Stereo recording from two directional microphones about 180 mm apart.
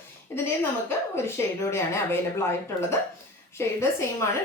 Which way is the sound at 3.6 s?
15° left (ahead or behind).